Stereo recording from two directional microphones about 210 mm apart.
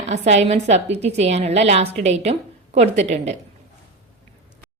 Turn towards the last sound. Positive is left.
turn(degrees=-30)  # may be behind; listen again after turning